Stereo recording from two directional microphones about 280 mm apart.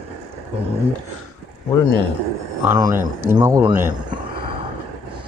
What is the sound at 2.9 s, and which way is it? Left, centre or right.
Speech, centre.